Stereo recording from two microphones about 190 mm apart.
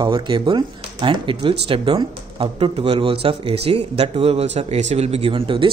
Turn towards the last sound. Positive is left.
turn(degrees=-25)  # may be behind; listen again after turning